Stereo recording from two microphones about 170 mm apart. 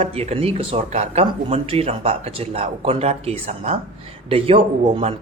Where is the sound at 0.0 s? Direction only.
35° right (ahead or behind).